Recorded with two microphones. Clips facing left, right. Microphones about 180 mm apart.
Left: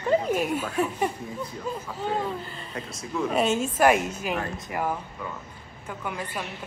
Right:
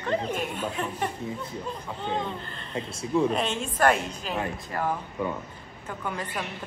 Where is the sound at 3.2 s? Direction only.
5° left (ahead or behind).